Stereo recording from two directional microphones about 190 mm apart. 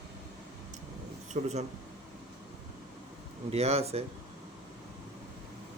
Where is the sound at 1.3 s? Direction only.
35° right (ahead or behind).